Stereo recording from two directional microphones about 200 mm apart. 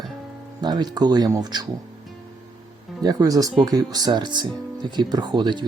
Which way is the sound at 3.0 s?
15° right (ahead or behind).